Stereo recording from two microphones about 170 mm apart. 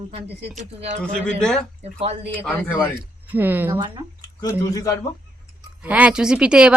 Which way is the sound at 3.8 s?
25° right (ahead or behind).